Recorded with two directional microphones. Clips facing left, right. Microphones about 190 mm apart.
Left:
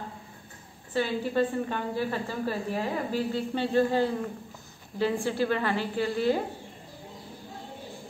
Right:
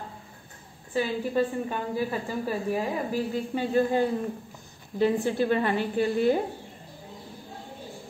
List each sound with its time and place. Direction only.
0.9 s a woman's voice: 10° right (ahead or behind)